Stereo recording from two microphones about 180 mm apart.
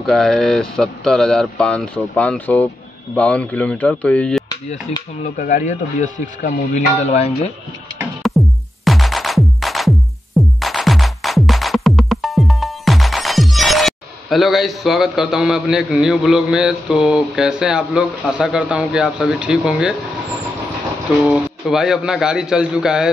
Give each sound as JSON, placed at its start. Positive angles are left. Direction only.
{"t": 0.0, "sound": "speech", "side_deg": 5}
{"t": 5.4, "sound": "a man's voice", "side_deg": 45}
{"t": 8.0, "sound": "music", "side_deg": 0}
{"t": 18.4, "sound": "speech", "side_deg": -5}
{"t": 21.3, "sound": "speech", "side_deg": -5}